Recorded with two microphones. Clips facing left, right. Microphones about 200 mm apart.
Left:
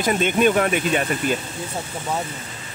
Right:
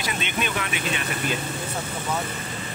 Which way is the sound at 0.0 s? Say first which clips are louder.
Left 11 dB; 45° left (ahead or behind).